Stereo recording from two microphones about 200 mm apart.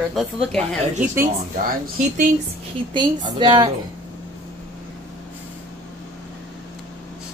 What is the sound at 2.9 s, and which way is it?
Speech, 25° right (ahead or behind).